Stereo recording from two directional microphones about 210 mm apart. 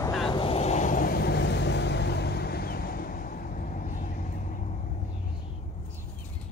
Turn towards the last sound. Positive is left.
turn(degrees=40)  # may be behind; listen again after turning